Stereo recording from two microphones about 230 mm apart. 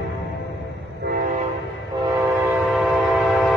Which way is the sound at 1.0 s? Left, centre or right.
Right.